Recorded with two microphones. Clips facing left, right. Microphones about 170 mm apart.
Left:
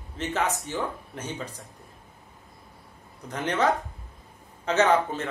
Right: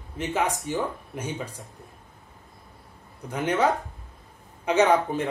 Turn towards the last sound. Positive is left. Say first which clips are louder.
# right 2 dB
turn(degrees=-15)  # may be behind; listen again after turning